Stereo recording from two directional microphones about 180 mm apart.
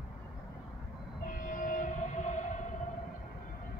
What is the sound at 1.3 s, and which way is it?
Train, 50° left (ahead or behind).